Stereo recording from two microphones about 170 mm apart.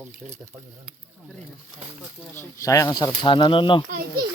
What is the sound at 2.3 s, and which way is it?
Speech, 15° left (ahead or behind).